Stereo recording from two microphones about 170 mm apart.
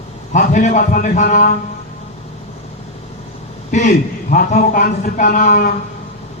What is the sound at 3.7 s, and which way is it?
A man's voice, 45° left (ahead or behind).